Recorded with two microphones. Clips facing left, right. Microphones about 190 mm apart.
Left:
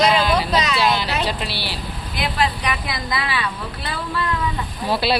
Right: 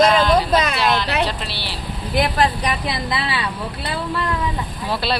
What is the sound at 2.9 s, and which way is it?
Speech, 30° right (ahead or behind).